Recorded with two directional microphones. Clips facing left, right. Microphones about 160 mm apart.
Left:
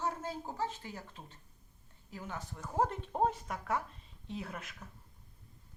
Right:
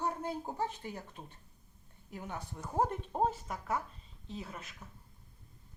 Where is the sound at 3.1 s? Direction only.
5° right (ahead or behind).